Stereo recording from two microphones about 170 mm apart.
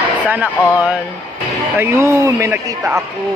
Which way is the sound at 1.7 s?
15° right (ahead or behind).